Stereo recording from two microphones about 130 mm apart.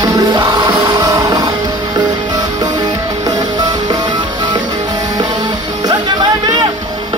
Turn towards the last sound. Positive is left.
turn(degrees=-35)  # may be behind; listen again after turning